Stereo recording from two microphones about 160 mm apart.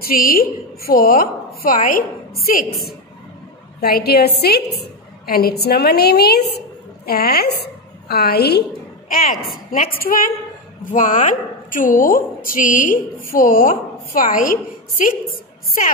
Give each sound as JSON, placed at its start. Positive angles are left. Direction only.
{"t": 0.0, "sound": "a woman's voice", "side_deg": 65}
{"t": 3.8, "sound": "a woman's voice", "side_deg": 75}
{"t": 7.1, "sound": "a woman's voice", "side_deg": 75}
{"t": 9.7, "sound": "a woman's voice", "side_deg": 60}
{"t": 10.9, "sound": "a woman's voice", "side_deg": 50}